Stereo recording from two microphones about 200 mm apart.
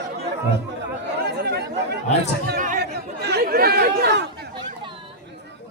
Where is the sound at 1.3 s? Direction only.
55° right (ahead or behind).